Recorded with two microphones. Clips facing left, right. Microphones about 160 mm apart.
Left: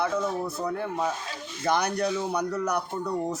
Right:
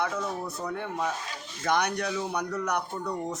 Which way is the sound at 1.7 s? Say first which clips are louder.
Left 2 dB; 30° left (ahead or behind).